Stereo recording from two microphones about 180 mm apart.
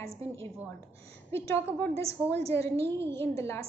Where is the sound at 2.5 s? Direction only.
15° left (ahead or behind).